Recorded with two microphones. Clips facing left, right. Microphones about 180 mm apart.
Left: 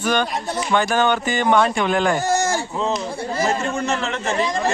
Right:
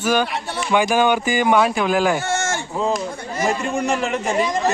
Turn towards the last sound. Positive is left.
turn(degrees=-15)  # may be behind; listen again after turning